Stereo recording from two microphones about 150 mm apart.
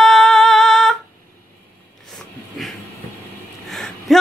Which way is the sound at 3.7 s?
Centre (ahead or behind).